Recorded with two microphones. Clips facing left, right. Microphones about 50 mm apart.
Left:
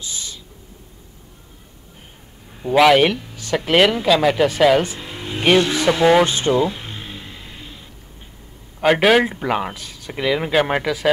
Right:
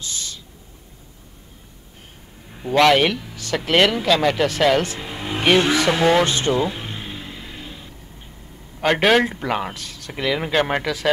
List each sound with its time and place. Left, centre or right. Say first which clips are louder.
0.0 s a sound: even; centre
2.7 s speech: left 2 dB; centre
5.0 s vehicle: right 2 dB; centre
5.8 s speech: left 2 dB; centre
6.7 s a sound: right 1 dB; centre
8.8 s speech: left 2 dB; centre